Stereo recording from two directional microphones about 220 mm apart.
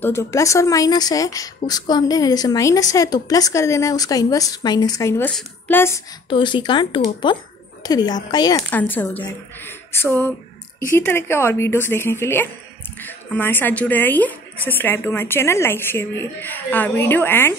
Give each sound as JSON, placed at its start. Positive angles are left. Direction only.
{"t": 0.0, "sound": "speech", "side_deg": 10}
{"t": 6.2, "sound": "speech", "side_deg": 20}